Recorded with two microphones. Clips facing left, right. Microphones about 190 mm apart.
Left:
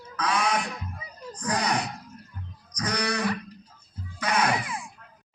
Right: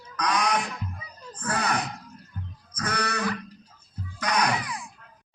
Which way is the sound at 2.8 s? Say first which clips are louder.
Left 1 dB; 15° left (ahead or behind).